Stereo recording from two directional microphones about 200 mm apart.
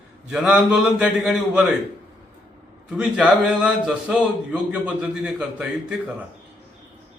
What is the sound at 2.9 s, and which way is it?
A man's voice, 5° right (ahead or behind).